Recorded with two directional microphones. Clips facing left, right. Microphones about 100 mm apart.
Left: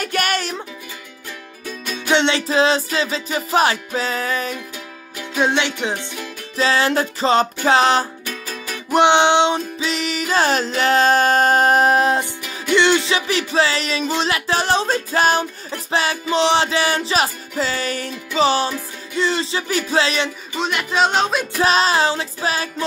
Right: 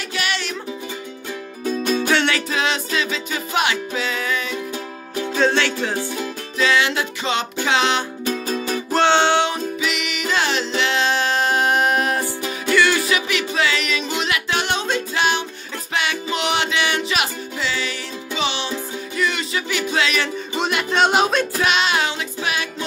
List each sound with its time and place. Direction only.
0.0 s music: 50° left (ahead or behind)
2.0 s music: 20° left (ahead or behind); by 4.6 s 40° left (ahead or behind)
5.3 s music: 15° left (ahead or behind)
6.6 s music: 35° left (ahead or behind)
8.3 s music: 30° right (ahead or behind)
8.9 s music: 15° left (ahead or behind); by 18.8 s 40° left (ahead or behind)
19.1 s music: 30° left (ahead or behind)
20.5 s music: centre (ahead or behind)
21.5 s music: 35° left (ahead or behind)